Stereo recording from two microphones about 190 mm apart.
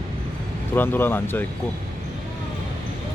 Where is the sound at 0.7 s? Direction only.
10° left (ahead or behind).